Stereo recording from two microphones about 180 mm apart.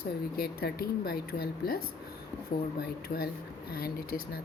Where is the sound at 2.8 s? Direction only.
60° left (ahead or behind).